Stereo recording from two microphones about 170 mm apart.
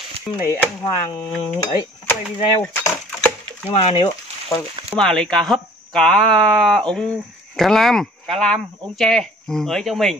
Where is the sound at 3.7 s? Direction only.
35° left (ahead or behind).